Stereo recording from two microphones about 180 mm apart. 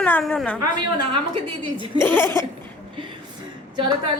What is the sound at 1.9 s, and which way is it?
Speech, 10° left (ahead or behind).